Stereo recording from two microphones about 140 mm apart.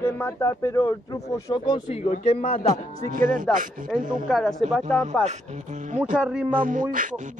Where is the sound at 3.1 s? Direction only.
75° right (ahead or behind).